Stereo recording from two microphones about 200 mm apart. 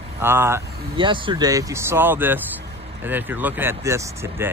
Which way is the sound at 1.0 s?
25° right (ahead or behind).